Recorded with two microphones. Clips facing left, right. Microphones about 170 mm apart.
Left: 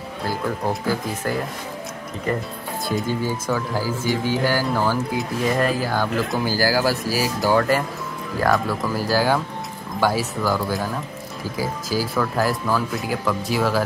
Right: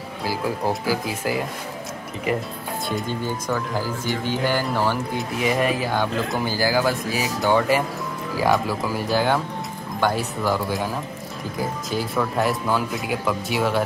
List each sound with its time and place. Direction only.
0.2 s speech: 5° right (ahead or behind)
2.9 s speech: 5° left (ahead or behind)